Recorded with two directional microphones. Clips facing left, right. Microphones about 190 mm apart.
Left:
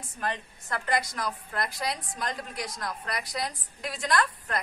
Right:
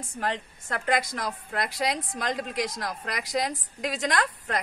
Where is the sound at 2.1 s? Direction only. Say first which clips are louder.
Right 5 dB; 90° right.